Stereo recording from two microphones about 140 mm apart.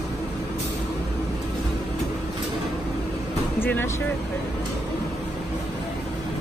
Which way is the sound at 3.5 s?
15° left (ahead or behind).